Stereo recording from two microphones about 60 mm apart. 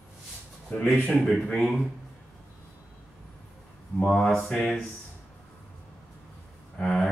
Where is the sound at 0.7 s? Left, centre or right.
Left.